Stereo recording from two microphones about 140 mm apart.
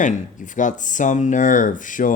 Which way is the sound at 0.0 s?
65° left (ahead or behind).